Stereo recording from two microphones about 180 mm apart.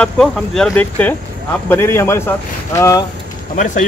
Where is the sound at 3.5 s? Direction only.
45° left (ahead or behind).